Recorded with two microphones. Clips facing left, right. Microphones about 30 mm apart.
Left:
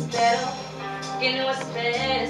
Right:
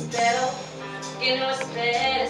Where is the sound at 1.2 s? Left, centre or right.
Centre.